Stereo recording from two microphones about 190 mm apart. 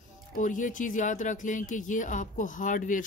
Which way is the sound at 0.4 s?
40° left (ahead or behind).